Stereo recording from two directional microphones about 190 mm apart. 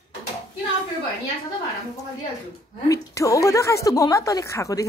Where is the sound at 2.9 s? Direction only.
15° left (ahead or behind).